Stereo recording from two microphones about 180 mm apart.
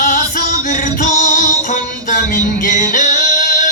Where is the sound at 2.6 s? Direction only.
45° left (ahead or behind).